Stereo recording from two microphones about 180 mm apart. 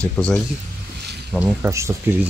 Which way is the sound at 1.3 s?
10° right (ahead or behind).